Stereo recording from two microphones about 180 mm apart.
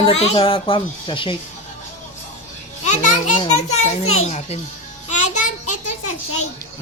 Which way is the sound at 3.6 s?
40° left (ahead or behind).